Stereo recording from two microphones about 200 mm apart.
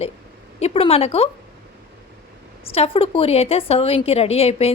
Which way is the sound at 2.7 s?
30° left (ahead or behind).